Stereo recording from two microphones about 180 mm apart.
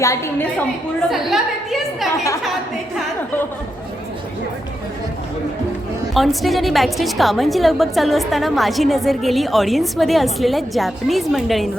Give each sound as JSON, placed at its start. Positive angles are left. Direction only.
{"t": 0.0, "sound": "a woman's voice", "side_deg": 15}
{"t": 1.1, "sound": "a woman's voice", "side_deg": 0}
{"t": 6.1, "sound": "a woman's voice", "side_deg": 0}